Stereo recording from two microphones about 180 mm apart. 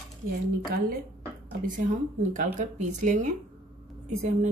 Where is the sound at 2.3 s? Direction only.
45° right (ahead or behind).